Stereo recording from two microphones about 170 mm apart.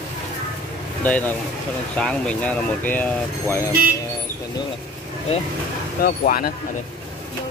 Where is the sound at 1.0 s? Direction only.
10° left (ahead or behind).